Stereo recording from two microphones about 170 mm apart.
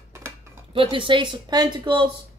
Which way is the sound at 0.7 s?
30° right (ahead or behind).